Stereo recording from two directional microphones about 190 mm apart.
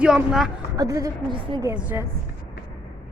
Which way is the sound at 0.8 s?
15° right (ahead or behind).